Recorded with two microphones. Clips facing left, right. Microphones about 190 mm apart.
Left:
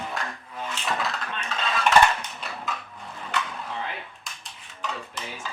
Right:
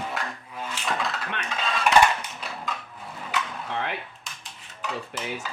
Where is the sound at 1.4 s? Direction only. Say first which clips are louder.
Left 1 dB; 10° right (ahead or behind).